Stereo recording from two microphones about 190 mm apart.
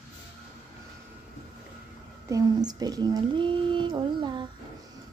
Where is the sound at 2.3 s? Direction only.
20° right (ahead or behind).